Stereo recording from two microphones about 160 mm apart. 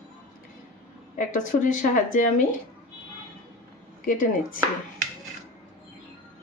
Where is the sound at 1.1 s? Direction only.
55° left (ahead or behind).